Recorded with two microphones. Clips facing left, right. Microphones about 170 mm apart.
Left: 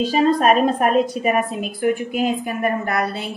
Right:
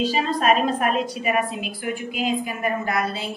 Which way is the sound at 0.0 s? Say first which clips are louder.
Left 5 dB; 45° left (ahead or behind).